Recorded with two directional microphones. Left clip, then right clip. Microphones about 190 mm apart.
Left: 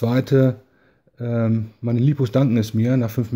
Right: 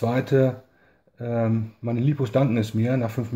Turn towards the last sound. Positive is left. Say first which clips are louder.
# left 3 dB
turn(degrees=50)  # may be behind; listen again after turning